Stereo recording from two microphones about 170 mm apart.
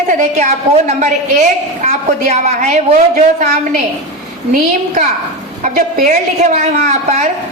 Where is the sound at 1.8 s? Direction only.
40° right (ahead or behind).